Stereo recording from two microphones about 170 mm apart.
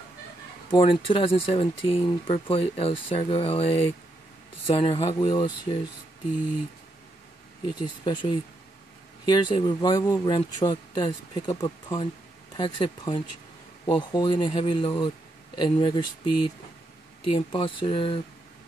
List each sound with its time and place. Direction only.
0.7 s speech: 30° left (ahead or behind)
7.8 s speech: 25° left (ahead or behind)
14.1 s speech: 30° left (ahead or behind)